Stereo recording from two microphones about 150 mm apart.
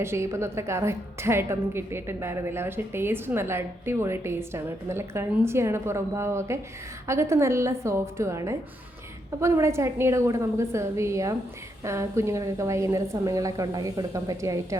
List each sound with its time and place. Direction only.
0.0 s a woman's voice: 15° right (ahead or behind)